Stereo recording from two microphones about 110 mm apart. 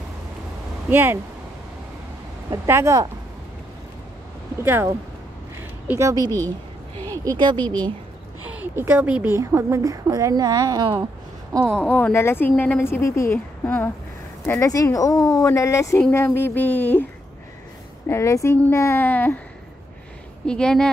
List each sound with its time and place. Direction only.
0.8 s a woman's voice: 20° right (ahead or behind)
2.5 s a woman's voice: 25° right (ahead or behind)
4.6 s a woman's voice: 20° right (ahead or behind)
5.6 s a sound: 20° right (ahead or behind)
6.2 s speech: 20° left (ahead or behind)
7.1 s speech: 35° right (ahead or behind)
8.5 s a woman's voice: 20° right (ahead or behind); by 10.8 s 35° right (ahead or behind)
11.7 s speech: 15° left (ahead or behind)
13.7 s speech: 15° left (ahead or behind)
14.4 s speech: 25° left (ahead or behind)
18.0 s speech: 25° left (ahead or behind)
20.4 s speech: 5° left (ahead or behind)